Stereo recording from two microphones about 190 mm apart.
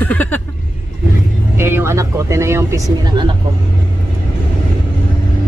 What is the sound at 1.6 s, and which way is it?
Speech, 10° right (ahead or behind).